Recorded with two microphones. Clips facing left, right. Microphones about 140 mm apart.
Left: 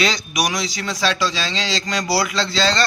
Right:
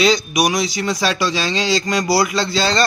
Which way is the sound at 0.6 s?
15° right (ahead or behind).